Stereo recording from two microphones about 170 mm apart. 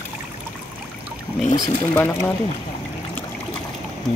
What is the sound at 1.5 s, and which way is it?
Speech, 20° left (ahead or behind).